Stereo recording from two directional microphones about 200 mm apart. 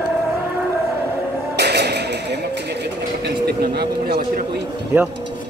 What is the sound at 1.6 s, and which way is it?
Music, 55° right (ahead or behind).